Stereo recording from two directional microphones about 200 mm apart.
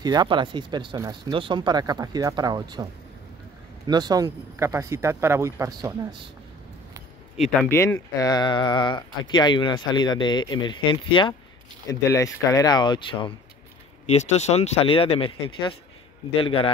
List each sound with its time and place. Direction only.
0.0 s speech: 20° right (ahead or behind)
7.6 s speech: 10° left (ahead or behind); by 16.7 s 30° left (ahead or behind)